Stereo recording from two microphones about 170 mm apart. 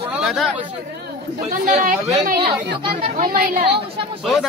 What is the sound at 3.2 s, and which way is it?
Speech, 60° right (ahead or behind).